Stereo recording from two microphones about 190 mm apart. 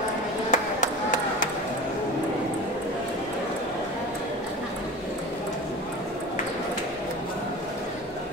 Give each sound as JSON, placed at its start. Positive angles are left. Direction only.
{"t": 0.5, "sound": "ping", "side_deg": 40}